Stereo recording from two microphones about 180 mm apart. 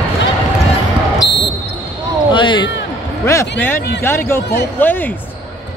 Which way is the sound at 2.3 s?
25° left (ahead or behind).